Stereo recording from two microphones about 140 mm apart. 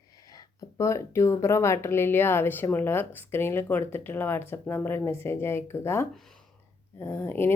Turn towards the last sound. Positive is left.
turn(degrees=15)  # may be behind; listen again after turning